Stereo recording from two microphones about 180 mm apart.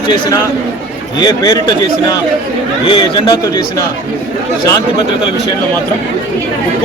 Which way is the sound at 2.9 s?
20° left (ahead or behind).